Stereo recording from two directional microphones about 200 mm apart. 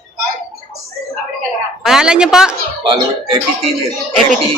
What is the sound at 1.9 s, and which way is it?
Speech, 5° right (ahead or behind).